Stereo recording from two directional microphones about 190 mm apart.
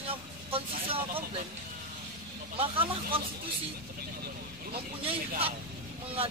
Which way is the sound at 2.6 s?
30° right (ahead or behind).